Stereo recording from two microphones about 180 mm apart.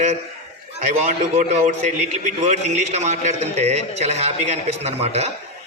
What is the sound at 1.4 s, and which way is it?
A man's voice, 40° right (ahead or behind).